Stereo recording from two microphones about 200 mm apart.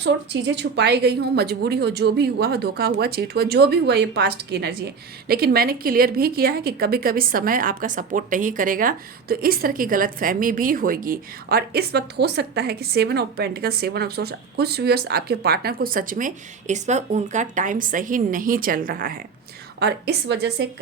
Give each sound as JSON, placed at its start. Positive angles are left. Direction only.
{"t": 0.0, "sound": "a woman's voice", "side_deg": -60}
{"t": 19.8, "sound": "speech", "side_deg": -55}